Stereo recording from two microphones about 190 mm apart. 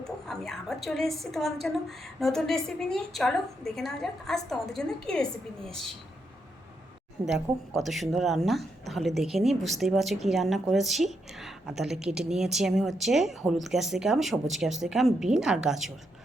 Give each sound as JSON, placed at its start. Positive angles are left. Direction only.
{"t": 0.0, "sound": "speech", "side_deg": 0}
{"t": 7.3, "sound": "speech", "side_deg": -5}